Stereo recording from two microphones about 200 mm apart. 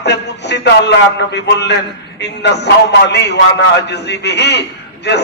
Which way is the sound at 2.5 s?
60° left (ahead or behind).